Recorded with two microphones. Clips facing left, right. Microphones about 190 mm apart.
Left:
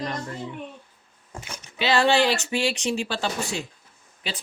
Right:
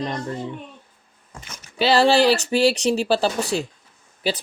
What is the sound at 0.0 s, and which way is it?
Speech, 30° right (ahead or behind).